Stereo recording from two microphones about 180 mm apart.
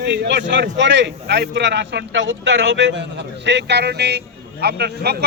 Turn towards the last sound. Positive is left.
turn(degrees=-65)  # may be behind; listen again after turning